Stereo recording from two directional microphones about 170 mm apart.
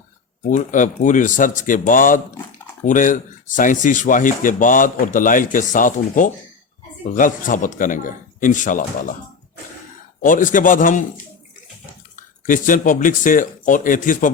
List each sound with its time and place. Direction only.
0.5 s speech: 50° left (ahead or behind)
10.2 s speech: 50° left (ahead or behind)
12.1 s speech: 50° left (ahead or behind)